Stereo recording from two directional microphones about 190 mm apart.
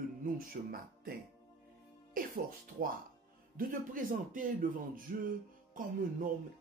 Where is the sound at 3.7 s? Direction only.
45° right (ahead or behind).